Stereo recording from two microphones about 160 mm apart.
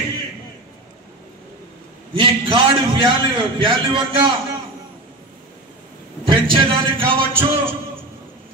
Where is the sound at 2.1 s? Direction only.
30° right (ahead or behind).